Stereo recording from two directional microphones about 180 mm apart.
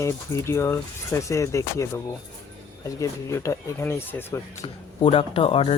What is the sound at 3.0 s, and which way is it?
Speech, 15° left (ahead or behind).